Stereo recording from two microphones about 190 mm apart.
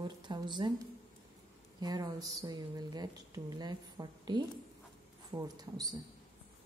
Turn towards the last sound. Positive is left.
turn(degrees=-20)  # may be behind; listen again after turning